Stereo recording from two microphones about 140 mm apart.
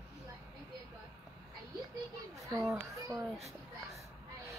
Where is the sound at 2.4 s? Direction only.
20° right (ahead or behind).